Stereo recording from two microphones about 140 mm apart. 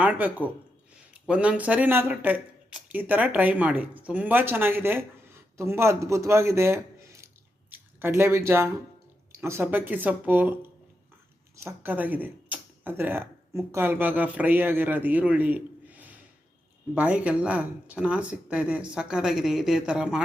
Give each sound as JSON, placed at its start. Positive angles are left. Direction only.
{"t": 0.0, "sound": "speech", "side_deg": -10}
{"t": 11.5, "sound": "speech", "side_deg": -15}